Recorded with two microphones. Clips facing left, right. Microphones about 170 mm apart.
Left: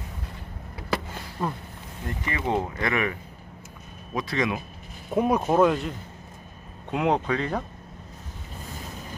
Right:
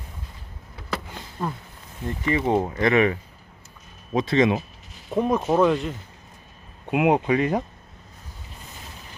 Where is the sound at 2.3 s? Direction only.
20° right (ahead or behind).